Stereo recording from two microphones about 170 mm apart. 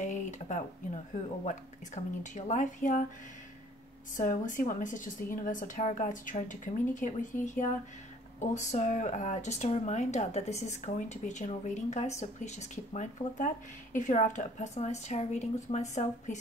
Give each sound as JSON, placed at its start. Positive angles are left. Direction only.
{"t": 0.0, "sound": "a sound", "side_deg": 45}
{"t": 2.0, "sound": "a woman's voice", "side_deg": 40}
{"t": 4.2, "sound": "speech", "side_deg": 50}